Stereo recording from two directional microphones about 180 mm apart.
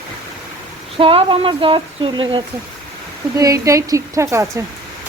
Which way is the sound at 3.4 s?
15° right (ahead or behind).